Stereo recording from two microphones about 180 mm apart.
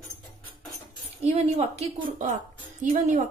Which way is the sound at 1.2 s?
35° right (ahead or behind).